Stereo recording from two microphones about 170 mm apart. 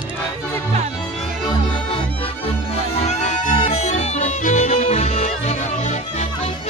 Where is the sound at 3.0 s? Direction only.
40° left (ahead or behind).